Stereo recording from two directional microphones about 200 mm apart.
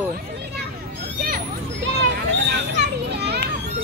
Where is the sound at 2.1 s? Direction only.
55° right (ahead or behind).